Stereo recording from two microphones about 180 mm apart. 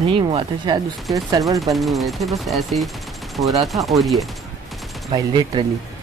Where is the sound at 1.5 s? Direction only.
Centre (ahead or behind).